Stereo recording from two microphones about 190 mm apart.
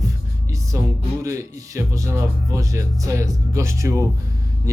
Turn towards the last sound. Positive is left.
turn(degrees=-15)  # may be behind; listen again after turning